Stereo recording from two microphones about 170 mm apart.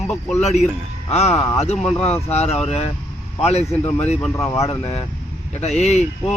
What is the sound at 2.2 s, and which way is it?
Speech, 40° left (ahead or behind).